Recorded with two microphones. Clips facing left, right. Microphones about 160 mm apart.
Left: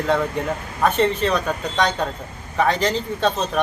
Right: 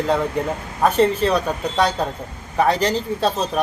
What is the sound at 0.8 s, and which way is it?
Speech, 35° right (ahead or behind).